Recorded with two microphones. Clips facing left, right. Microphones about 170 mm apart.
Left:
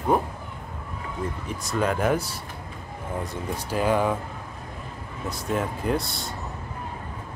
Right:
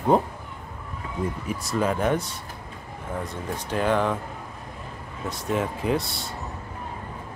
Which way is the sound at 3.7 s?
5° left (ahead or behind).